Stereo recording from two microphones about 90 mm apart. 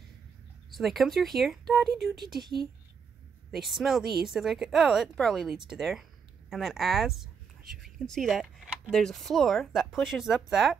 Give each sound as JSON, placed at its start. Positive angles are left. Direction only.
{"t": 0.7, "sound": "speech", "side_deg": 0}
{"t": 3.5, "sound": "speech", "side_deg": 0}